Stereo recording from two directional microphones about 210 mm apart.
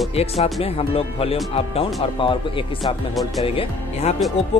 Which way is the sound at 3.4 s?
25° left (ahead or behind).